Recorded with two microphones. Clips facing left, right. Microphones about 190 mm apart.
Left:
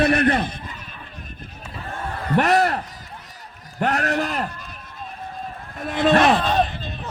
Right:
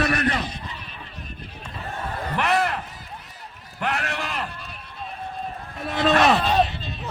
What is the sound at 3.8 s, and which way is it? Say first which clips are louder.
Speech: left 6 dB; 40° left (ahead or behind).